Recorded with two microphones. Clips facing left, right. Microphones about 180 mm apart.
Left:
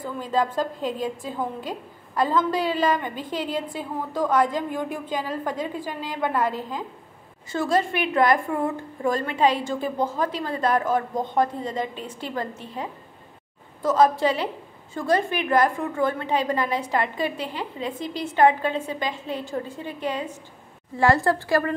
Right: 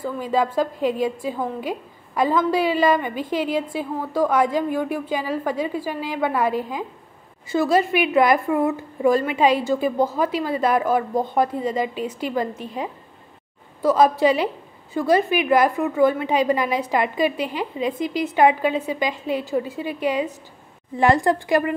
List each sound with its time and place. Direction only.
0.0 s a woman's voice: 10° right (ahead or behind)